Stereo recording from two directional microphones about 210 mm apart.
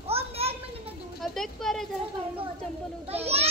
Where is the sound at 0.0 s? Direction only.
30° right (ahead or behind).